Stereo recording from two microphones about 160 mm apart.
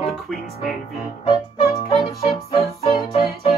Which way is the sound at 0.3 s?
Centre (ahead or behind).